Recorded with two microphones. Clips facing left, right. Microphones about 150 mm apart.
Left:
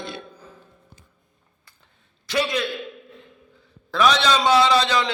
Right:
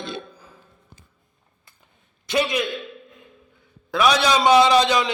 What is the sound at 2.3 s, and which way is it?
Speech, 20° right (ahead or behind).